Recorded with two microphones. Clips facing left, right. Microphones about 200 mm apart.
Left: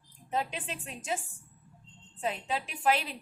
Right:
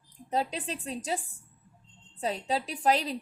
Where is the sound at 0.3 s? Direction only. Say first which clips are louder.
Right 3 dB; 35° right (ahead or behind).